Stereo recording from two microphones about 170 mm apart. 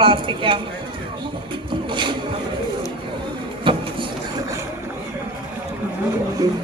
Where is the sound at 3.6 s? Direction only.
30° right (ahead or behind).